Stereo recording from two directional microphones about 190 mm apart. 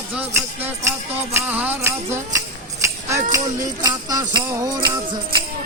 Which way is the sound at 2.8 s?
15° right (ahead or behind).